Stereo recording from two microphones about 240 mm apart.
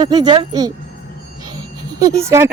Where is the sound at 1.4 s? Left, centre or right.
Centre.